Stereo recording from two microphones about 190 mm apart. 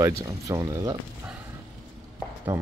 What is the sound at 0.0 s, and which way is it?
Speech, 15° right (ahead or behind).